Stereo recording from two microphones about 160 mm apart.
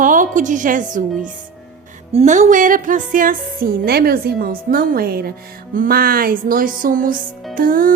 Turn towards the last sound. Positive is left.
turn(degrees=-60)  # may be behind; listen again after turning